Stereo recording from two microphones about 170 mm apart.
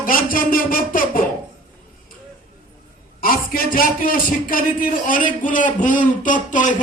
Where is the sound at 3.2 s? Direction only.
55° left (ahead or behind).